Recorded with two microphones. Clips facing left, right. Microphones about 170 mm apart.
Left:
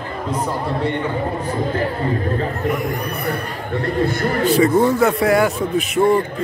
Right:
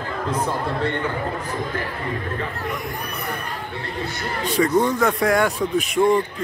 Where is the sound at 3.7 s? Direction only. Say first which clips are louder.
Left 14 dB; 55° left (ahead or behind).